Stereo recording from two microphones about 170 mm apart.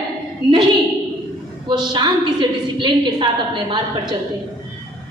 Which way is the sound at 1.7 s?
25° right (ahead or behind).